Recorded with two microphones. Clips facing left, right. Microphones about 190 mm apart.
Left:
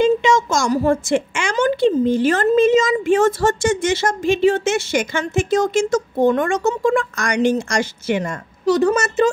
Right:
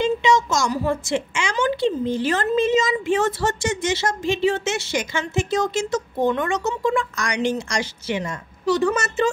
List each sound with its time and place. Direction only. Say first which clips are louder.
0.0 s a woman's voice: left 4 dB; 50° left (ahead or behind)